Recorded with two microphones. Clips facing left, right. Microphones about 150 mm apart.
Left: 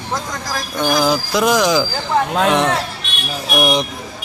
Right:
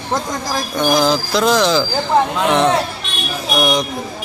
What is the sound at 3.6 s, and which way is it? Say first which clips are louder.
Speech: even; 25° left (ahead or behind).